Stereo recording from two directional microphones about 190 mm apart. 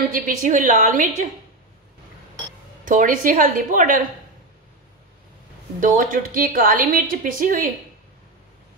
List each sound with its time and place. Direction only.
0.1 s a woman's voice: 40° right (ahead or behind)
2.8 s a woman's voice: 45° right (ahead or behind)
5.8 s a woman's voice: 45° right (ahead or behind)